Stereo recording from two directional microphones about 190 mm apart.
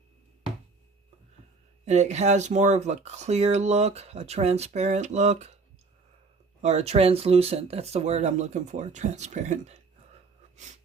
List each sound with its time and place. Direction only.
1.8 s speech: 35° right (ahead or behind)
6.6 s speech: 35° right (ahead or behind)